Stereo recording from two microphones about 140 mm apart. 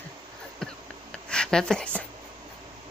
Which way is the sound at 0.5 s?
5° left (ahead or behind).